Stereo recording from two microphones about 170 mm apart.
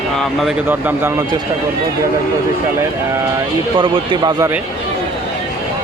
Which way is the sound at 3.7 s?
30° right (ahead or behind).